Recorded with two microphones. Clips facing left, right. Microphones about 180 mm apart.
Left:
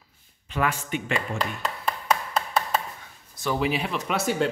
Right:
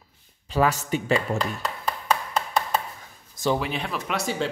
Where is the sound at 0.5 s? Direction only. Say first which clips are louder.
Right 4 dB; 40° right (ahead or behind).